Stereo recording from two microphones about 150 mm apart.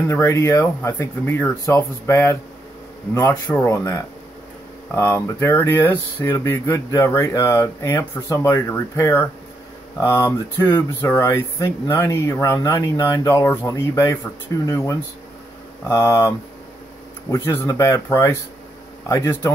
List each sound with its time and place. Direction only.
0.0 s speech: 15° left (ahead or behind)
3.5 s speech: 20° left (ahead or behind)
17.5 s speech: 15° left (ahead or behind)